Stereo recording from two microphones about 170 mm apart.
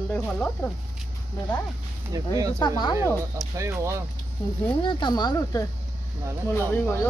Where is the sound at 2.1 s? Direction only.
20° right (ahead or behind).